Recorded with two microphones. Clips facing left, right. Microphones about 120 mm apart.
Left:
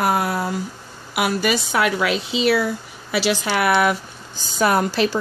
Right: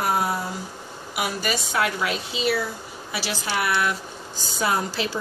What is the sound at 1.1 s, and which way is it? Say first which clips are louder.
Speech: left 6 dB; 85° left.